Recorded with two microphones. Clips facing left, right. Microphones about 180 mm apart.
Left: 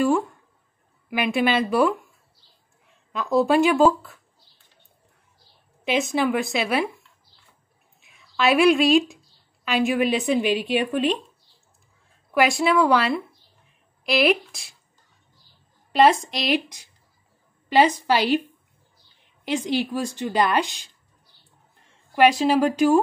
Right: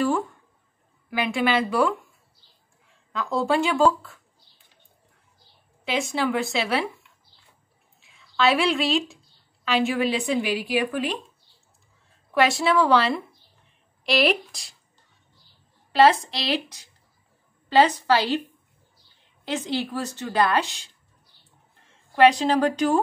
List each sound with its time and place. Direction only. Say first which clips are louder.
1.1 s speech: left 2 dB; 20° left (ahead or behind)
3.1 s speech: left 4 dB; 20° left (ahead or behind)
6.1 s a woman's voice: left 2 dB; 15° left (ahead or behind)
8.0 s a sound: even; 20° left (ahead or behind)
9.8 s speech: left 3 dB; 15° left (ahead or behind)
12.4 s a woman's voice: left 1 dB; 10° left (ahead or behind)
15.9 s a woman's voice: even; 15° left (ahead or behind)
19.4 s a woman's voice: left 3 dB; 15° left (ahead or behind)
22.1 s a woman's voice: even; 10° left (ahead or behind)